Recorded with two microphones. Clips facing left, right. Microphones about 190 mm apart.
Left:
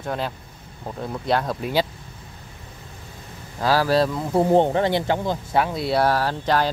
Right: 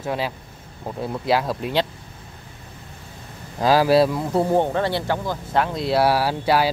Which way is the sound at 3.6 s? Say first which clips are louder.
Right 3 dB; 15° right (ahead or behind).